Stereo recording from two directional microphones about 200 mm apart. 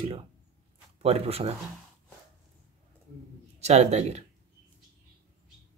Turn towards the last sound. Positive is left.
turn(degrees=-35)  # may be behind; listen again after turning